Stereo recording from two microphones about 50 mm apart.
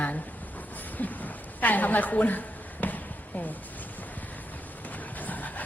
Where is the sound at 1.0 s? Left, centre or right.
Left.